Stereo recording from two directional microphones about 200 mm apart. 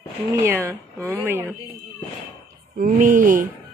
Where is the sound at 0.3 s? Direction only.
10° right (ahead or behind).